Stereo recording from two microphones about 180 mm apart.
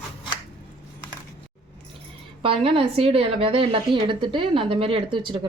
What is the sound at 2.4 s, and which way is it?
Speech, 30° right (ahead or behind).